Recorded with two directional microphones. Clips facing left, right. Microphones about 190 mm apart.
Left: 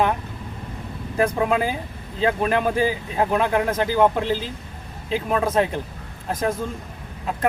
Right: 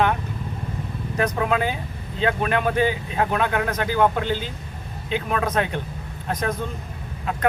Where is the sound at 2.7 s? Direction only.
35° left (ahead or behind).